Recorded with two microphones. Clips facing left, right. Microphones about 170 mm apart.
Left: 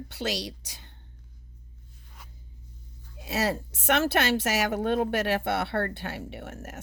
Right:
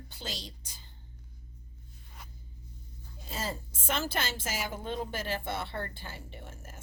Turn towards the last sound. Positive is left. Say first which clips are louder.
# left 9 dB
turn(degrees=75)  # may be behind; listen again after turning